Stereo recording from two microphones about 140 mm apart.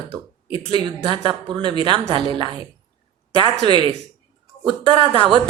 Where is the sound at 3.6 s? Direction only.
35° right (ahead or behind).